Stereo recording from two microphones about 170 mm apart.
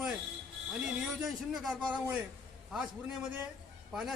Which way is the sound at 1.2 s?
Centre (ahead or behind).